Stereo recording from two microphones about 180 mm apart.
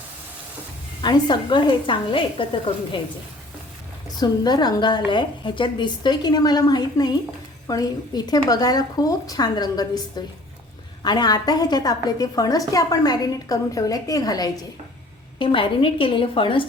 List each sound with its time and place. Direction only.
1.0 s a woman's voice: 25° left (ahead or behind)
4.2 s a woman's voice: 25° left (ahead or behind)